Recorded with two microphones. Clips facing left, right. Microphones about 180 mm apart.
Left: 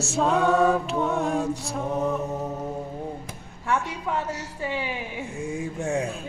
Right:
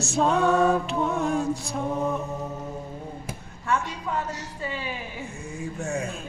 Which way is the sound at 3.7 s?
10° left (ahead or behind).